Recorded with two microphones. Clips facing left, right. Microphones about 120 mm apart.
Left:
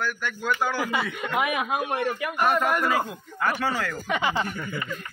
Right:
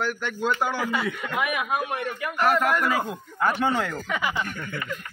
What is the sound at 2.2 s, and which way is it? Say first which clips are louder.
Speech: right 3 dB; 15° left (ahead or behind).